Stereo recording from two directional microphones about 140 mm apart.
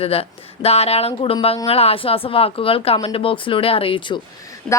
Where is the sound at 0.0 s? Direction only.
45° left (ahead or behind).